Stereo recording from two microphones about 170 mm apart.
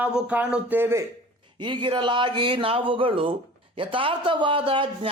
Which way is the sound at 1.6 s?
30° right (ahead or behind).